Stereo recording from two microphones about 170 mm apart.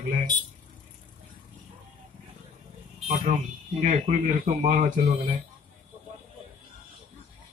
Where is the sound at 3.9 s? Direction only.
55° right (ahead or behind).